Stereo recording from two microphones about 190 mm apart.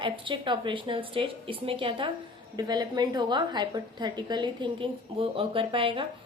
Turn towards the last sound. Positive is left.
turn(degrees=-25)  # may be behind; listen again after turning